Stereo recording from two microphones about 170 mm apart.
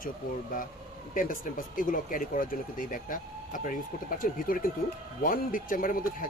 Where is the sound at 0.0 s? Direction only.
55° left (ahead or behind).